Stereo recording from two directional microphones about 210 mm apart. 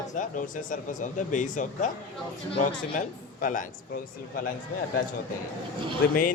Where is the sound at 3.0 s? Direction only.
40° left (ahead or behind).